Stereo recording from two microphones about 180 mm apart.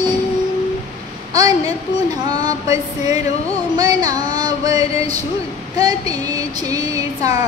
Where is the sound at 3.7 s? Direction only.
20° right (ahead or behind).